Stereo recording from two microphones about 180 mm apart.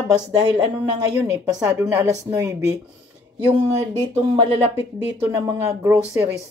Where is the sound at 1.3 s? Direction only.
20° right (ahead or behind).